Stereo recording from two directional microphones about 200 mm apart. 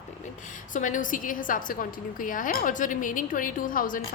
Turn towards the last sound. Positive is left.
turn(degrees=45)  # may be behind; listen again after turning